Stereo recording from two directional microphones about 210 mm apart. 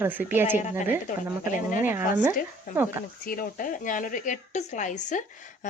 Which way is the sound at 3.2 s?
40° left (ahead or behind).